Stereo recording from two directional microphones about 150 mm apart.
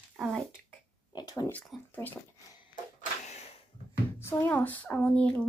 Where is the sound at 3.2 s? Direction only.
50° left (ahead or behind).